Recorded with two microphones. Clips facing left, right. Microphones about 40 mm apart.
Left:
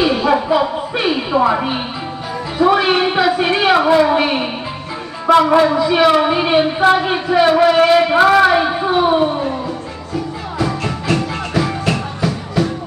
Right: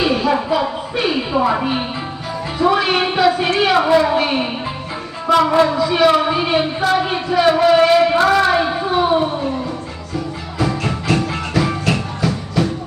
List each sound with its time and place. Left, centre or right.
0.1 s a sound: centre
0.9 s a woman's voice: centre
10.6 s music: centre